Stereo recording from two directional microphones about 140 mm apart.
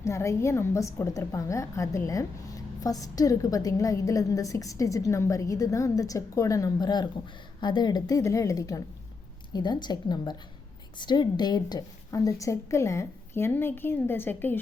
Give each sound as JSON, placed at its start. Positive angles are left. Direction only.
{"t": 0.0, "sound": "a woman's voice", "side_deg": 20}